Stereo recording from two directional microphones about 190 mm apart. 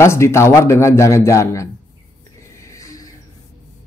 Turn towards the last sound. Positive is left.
turn(degrees=15)  # may be behind; listen again after turning